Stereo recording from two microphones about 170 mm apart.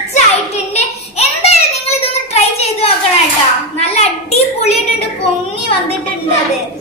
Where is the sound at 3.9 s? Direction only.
40° left (ahead or behind).